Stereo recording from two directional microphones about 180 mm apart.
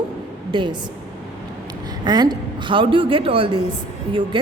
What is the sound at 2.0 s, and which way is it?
A woman's voice, 25° right (ahead or behind).